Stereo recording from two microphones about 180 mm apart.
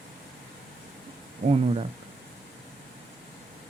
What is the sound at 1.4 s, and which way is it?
Speech, 35° right (ahead or behind).